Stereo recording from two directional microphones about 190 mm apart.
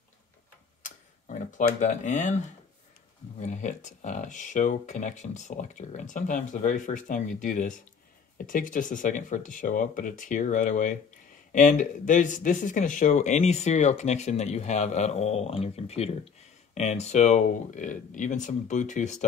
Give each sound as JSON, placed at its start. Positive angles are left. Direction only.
{"t": 0.8, "sound": "tick-tock", "side_deg": 40}
{"t": 3.3, "sound": "speech", "side_deg": 40}